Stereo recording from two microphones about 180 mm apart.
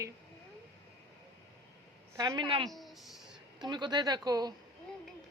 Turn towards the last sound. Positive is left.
turn(degrees=-20)  # may be behind; listen again after turning